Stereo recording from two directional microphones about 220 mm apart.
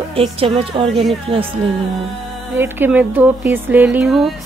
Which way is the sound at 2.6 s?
10° right (ahead or behind).